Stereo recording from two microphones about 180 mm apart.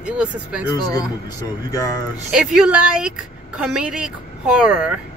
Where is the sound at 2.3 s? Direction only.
5° right (ahead or behind).